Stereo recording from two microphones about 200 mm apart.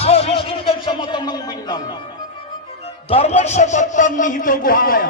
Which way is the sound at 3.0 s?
30° left (ahead or behind).